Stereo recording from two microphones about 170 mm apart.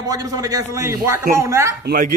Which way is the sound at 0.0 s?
20° right (ahead or behind).